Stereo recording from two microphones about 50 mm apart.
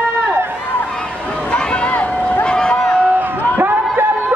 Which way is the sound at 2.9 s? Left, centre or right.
Right.